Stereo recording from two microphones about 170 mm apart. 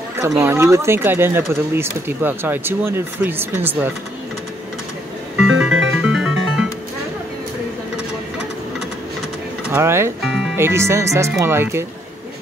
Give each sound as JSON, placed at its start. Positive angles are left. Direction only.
{"t": 0.4, "sound": "speech", "side_deg": -15}
{"t": 5.4, "sound": "music", "side_deg": -5}
{"t": 9.7, "sound": "speech", "side_deg": -15}
{"t": 10.2, "sound": "speech", "side_deg": -5}